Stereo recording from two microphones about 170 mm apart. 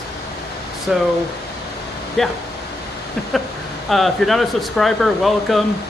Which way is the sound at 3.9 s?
Centre (ahead or behind).